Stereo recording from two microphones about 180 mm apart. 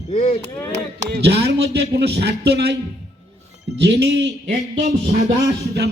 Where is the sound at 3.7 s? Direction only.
75° right (ahead or behind).